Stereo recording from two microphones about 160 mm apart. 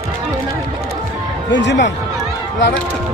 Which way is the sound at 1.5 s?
90° left.